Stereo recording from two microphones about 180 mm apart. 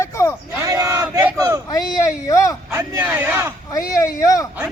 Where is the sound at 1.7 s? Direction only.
20° left (ahead or behind).